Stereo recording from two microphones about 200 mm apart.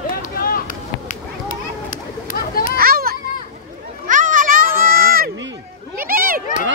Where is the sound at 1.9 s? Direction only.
45° left (ahead or behind).